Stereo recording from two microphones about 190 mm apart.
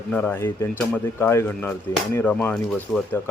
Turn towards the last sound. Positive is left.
turn(degrees=5)  # may be behind; listen again after turning